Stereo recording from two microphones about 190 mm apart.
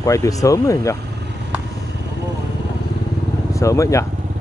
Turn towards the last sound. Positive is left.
turn(degrees=15)  # may be behind; listen again after turning